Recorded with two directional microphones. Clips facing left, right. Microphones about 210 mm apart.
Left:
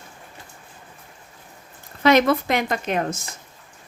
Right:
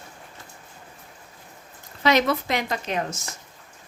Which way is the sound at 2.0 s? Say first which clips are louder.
Left 4 dB; 55° left (ahead or behind).